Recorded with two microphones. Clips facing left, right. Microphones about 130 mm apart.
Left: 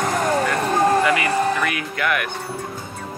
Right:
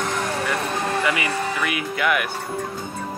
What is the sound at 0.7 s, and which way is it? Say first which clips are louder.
Vehicle: left 10 dB; 40° left (ahead or behind).